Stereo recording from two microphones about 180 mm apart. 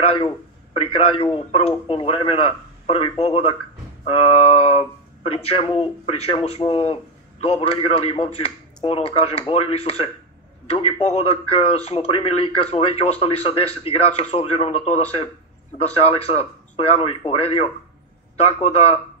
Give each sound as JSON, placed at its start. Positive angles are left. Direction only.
{"t": 0.0, "sound": "speech", "side_deg": 30}